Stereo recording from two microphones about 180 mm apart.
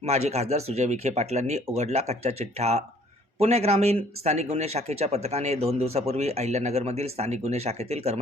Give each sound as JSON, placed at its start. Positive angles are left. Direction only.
{"t": 0.0, "sound": "speech", "side_deg": -35}